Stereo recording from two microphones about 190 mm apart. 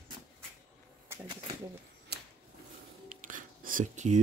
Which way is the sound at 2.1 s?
55° right (ahead or behind).